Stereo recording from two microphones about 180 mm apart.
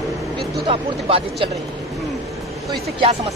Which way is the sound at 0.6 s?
30° right (ahead or behind).